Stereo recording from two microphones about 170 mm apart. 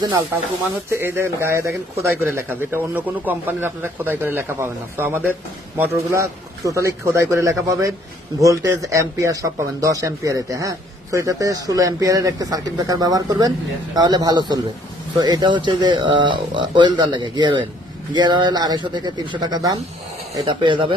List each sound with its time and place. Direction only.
0.9 s a man's voice: 15° right (ahead or behind); by 20.9 s 30° right (ahead or behind)